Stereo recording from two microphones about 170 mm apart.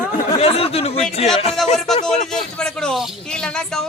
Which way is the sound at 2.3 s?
5° left (ahead or behind).